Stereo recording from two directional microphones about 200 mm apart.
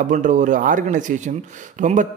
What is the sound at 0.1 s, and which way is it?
Speech, 40° right (ahead or behind).